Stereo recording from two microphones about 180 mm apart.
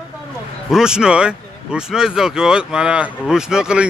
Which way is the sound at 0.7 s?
5° right (ahead or behind).